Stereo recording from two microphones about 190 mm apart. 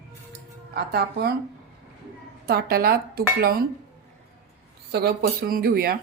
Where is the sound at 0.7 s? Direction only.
55° right (ahead or behind).